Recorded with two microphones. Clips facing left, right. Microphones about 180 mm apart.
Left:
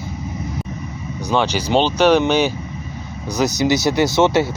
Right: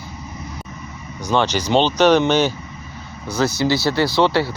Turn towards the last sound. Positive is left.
turn(degrees=20)  # may be behind; listen again after turning